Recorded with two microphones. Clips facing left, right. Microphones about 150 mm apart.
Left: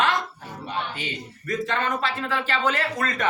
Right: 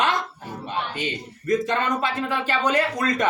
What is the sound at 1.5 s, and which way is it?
Speech, 15° right (ahead or behind).